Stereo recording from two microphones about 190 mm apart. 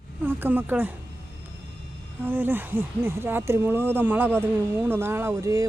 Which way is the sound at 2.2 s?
10° right (ahead or behind).